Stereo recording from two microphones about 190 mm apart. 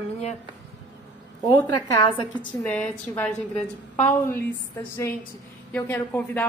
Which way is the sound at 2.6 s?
10° left (ahead or behind).